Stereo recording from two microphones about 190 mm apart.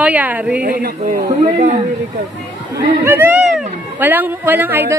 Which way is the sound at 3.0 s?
10° right (ahead or behind).